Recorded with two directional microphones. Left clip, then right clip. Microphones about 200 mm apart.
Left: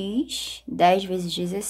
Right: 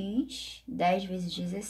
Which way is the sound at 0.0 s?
40° left (ahead or behind).